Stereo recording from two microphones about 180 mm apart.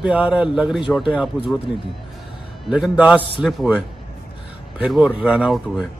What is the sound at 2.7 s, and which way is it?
A man's voice, 5° right (ahead or behind).